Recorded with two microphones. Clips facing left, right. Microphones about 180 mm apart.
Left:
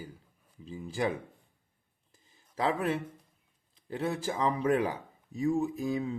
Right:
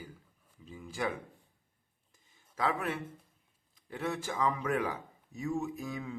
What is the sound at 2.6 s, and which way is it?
Speech, 30° left (ahead or behind).